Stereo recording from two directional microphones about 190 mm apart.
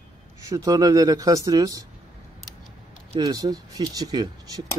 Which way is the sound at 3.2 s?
20° right (ahead or behind).